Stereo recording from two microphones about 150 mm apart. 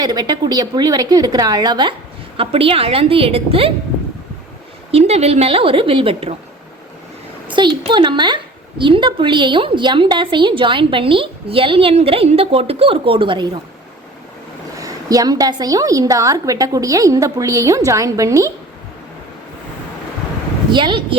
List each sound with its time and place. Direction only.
0.0 s a woman's voice: 25° right (ahead or behind)
4.9 s a woman's voice: 45° right (ahead or behind)
7.9 s a woman's voice: 30° right (ahead or behind)
14.8 s a woman's voice: 25° right (ahead or behind)
20.7 s a woman's voice: 30° right (ahead or behind)